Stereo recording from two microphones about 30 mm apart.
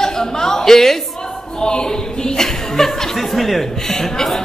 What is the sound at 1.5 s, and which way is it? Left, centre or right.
A man's voice, left.